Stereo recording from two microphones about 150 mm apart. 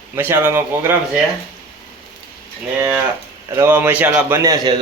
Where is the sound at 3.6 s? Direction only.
15° right (ahead or behind).